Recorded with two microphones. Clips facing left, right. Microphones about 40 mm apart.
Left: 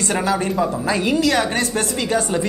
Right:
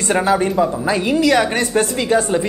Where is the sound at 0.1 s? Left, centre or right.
Centre.